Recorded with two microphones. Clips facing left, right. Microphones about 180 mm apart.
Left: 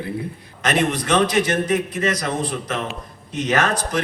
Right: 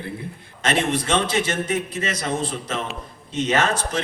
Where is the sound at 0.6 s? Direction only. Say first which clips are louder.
Left 1 dB; 25° right (ahead or behind).